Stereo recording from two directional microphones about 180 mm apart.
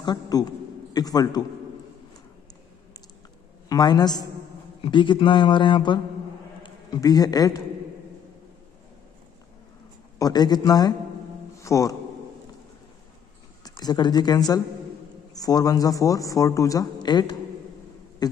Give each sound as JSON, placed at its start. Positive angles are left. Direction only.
{"t": 0.0, "sound": "a man's voice", "side_deg": 20}
{"t": 3.6, "sound": "a man's voice", "side_deg": 20}
{"t": 10.1, "sound": "speech", "side_deg": 20}
{"t": 13.7, "sound": "speech", "side_deg": 25}
{"t": 18.2, "sound": "insect", "side_deg": 20}